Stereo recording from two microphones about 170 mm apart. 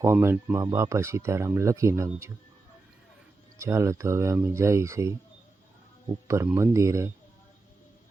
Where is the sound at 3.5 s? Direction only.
15° right (ahead or behind).